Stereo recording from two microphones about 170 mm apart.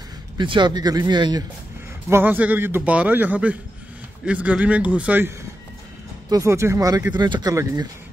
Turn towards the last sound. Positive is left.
turn(degrees=-25)  # may be behind; listen again after turning